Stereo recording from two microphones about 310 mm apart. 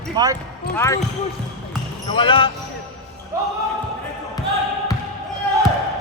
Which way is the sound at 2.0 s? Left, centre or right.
Centre.